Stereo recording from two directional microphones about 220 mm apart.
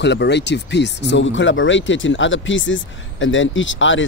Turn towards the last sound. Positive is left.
turn(degrees=60)  # may be behind; listen again after turning